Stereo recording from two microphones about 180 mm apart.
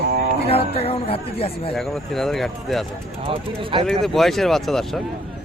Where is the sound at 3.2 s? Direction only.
30° right (ahead or behind).